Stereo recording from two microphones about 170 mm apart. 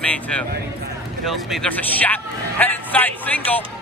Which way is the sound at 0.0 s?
5° left (ahead or behind).